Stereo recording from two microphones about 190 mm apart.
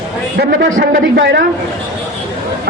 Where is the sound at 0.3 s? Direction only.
60° right (ahead or behind).